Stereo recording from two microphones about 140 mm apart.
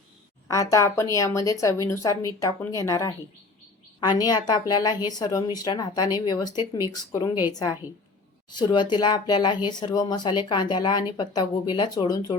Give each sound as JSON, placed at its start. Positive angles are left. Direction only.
{"t": 0.4, "sound": "speech", "side_deg": 25}